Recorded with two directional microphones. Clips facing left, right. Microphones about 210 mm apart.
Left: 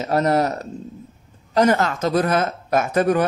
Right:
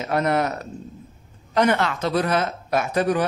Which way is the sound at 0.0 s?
35° left (ahead or behind).